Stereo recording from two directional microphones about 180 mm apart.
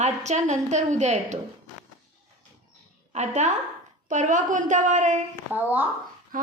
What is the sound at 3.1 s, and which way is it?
A woman's voice, 40° right (ahead or behind).